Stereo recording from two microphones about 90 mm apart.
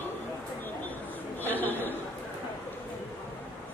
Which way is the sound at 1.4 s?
20° left (ahead or behind).